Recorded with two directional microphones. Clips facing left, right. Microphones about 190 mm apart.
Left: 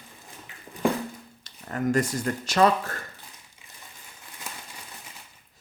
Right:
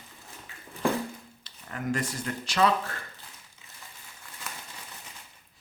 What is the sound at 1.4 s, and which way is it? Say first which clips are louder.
Speech: left 7 dB; 45° left (ahead or behind).